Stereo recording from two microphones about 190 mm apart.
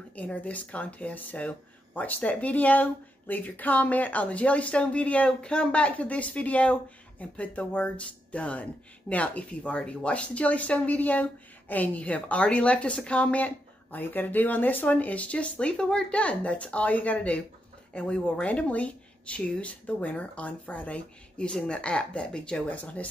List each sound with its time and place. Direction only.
0.1 s speech: 5° left (ahead or behind)